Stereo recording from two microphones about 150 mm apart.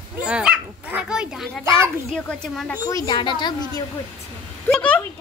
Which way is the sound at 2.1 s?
5° left (ahead or behind).